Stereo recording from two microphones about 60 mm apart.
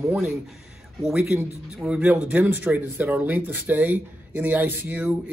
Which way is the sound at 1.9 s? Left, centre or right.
Centre.